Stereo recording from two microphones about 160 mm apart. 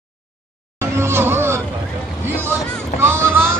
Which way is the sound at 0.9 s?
15° right (ahead or behind).